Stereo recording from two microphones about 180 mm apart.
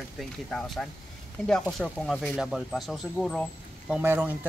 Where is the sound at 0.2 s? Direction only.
Centre (ahead or behind).